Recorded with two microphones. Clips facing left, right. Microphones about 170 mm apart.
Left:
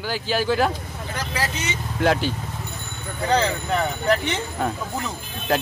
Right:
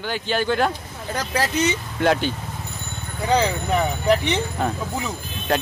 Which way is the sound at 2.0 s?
Centre (ahead or behind).